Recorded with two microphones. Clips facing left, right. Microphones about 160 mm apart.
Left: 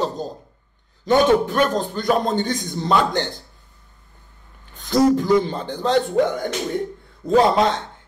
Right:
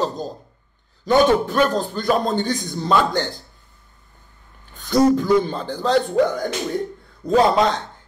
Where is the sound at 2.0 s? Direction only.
20° left (ahead or behind).